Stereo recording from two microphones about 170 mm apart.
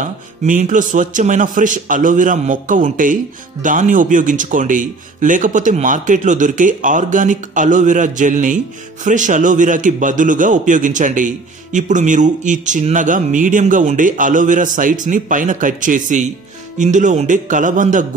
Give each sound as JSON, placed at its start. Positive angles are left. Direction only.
{"t": 0.0, "sound": "a man's voice", "side_deg": -50}